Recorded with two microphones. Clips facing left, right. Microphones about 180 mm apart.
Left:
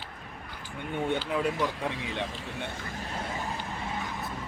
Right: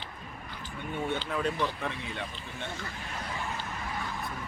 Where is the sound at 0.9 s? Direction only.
15° left (ahead or behind).